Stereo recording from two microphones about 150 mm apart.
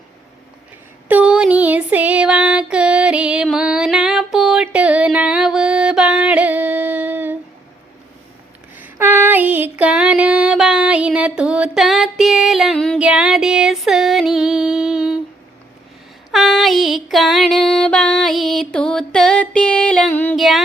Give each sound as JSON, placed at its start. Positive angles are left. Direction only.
{"t": 1.0, "sound": "female singing", "side_deg": -10}
{"t": 8.7, "sound": "a sound", "side_deg": -10}
{"t": 13.0, "sound": "music", "side_deg": -5}
{"t": 16.3, "sound": "music", "side_deg": 0}
{"t": 20.3, "sound": "child singing", "side_deg": 0}